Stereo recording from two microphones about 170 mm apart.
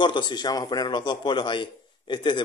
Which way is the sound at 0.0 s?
25° left (ahead or behind).